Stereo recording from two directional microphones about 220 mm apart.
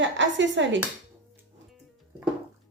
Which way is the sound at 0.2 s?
55° right (ahead or behind).